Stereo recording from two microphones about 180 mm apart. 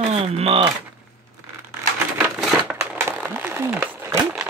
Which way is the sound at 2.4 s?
Centre (ahead or behind).